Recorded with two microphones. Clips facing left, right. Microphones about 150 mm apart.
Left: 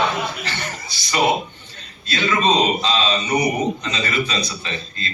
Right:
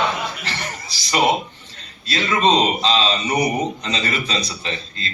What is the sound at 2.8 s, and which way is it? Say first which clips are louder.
A man's voice: right 1 dB; 30° right (ahead or behind).